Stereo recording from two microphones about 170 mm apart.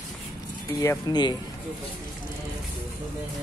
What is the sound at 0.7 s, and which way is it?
Speech, 25° left (ahead or behind).